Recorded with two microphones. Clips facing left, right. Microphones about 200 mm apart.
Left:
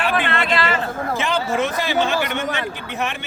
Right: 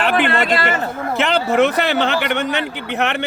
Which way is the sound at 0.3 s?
40° right (ahead or behind).